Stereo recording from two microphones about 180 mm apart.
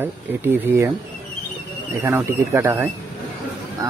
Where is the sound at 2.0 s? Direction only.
15° right (ahead or behind).